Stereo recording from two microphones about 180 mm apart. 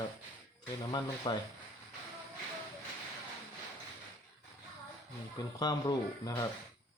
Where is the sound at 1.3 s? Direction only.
25° left (ahead or behind).